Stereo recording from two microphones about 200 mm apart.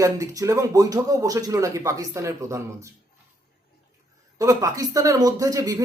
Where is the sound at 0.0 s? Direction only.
15° right (ahead or behind).